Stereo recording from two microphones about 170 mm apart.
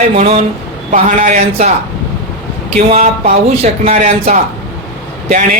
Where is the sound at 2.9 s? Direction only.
40° right (ahead or behind).